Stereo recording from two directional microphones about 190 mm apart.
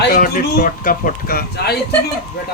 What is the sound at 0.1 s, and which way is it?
Speech, 45° left (ahead or behind).